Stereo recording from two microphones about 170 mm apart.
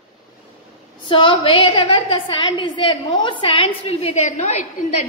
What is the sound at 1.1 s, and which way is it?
A woman's voice, 30° left (ahead or behind).